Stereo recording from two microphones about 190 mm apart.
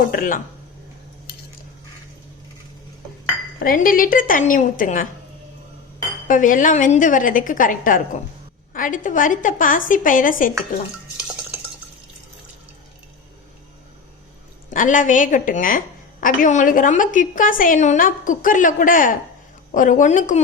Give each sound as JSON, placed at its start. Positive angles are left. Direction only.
{"t": 0.1, "sound": "a woman's voice", "side_deg": 45}
{"t": 3.6, "sound": "a woman's voice", "side_deg": 45}
{"t": 6.2, "sound": "a woman's voice", "side_deg": 45}
{"t": 14.7, "sound": "a woman's voice", "side_deg": 45}